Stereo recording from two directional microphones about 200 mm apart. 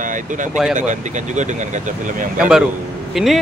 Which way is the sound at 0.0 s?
40° right (ahead or behind).